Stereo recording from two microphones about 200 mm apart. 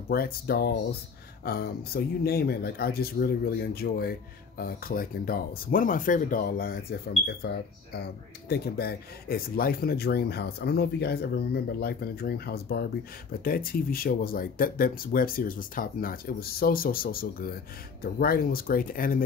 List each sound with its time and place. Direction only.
0.1 s speech: 50° left (ahead or behind)